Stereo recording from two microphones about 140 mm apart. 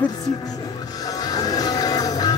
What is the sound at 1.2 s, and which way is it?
Music, 25° left (ahead or behind).